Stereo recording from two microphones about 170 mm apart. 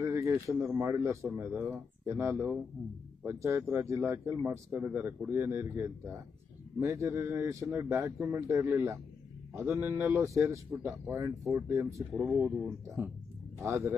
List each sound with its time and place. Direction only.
0.0 s speech: 15° right (ahead or behind)
13.6 s speech: 20° right (ahead or behind)